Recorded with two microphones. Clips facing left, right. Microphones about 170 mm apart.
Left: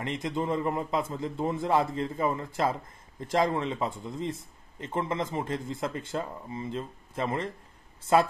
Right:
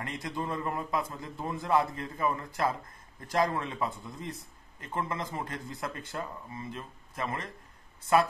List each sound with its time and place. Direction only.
0.0 s speech: 25° left (ahead or behind)